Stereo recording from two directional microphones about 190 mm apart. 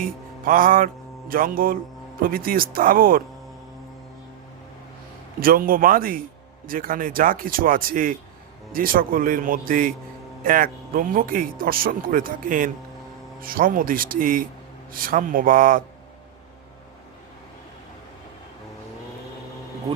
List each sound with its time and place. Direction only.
0.0 s music: 45° right (ahead or behind)
1.3 s speech: 50° right (ahead or behind)
5.4 s speech: 50° right (ahead or behind)